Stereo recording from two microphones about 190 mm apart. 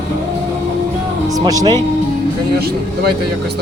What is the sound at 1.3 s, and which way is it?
Speech, 20° right (ahead or behind).